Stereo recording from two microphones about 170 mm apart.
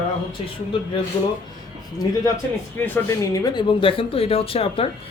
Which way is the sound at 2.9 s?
20° left (ahead or behind).